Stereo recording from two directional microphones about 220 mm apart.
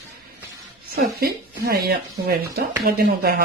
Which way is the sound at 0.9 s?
45° right (ahead or behind).